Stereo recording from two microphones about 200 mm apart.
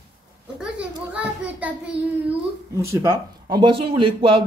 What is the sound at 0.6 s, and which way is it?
A child's voice, 5° right (ahead or behind).